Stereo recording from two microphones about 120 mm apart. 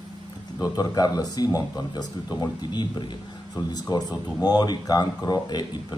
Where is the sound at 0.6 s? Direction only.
30° left (ahead or behind).